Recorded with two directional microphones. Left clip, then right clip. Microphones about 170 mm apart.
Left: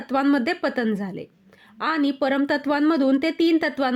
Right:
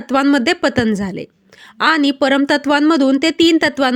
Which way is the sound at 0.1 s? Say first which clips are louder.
Right 7 dB; 30° right (ahead or behind).